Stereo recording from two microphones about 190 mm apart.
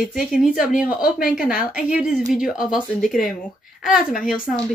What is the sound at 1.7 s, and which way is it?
A woman's voice, 5° right (ahead or behind).